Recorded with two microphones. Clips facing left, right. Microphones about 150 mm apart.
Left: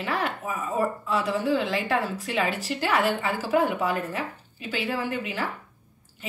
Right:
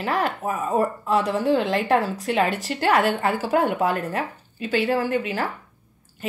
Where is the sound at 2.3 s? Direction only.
55° right (ahead or behind).